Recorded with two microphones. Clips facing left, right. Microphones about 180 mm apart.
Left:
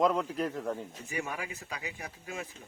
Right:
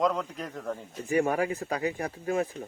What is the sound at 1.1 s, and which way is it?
Speech, 50° right (ahead or behind).